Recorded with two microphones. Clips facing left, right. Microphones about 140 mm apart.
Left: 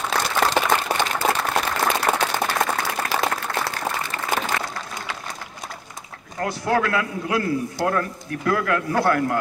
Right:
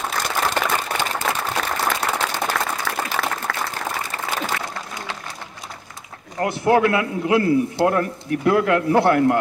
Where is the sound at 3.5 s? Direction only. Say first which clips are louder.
Left 1 dB; 85° right.